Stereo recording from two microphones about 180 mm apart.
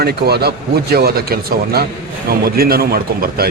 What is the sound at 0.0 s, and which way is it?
Speech, 65° right (ahead or behind).